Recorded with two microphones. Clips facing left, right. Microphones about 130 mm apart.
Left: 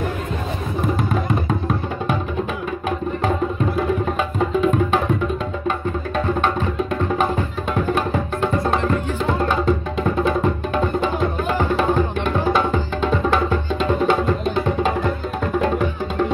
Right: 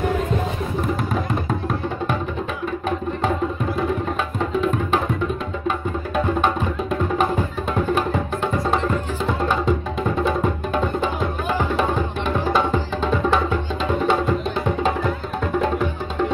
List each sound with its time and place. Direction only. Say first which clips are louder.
4.6 s music: left 2 dB; centre (ahead or behind)